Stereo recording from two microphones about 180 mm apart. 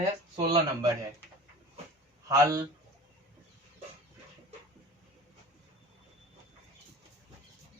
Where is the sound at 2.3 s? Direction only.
20° right (ahead or behind).